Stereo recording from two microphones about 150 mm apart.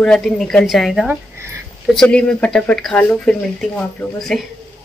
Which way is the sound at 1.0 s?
15° right (ahead or behind).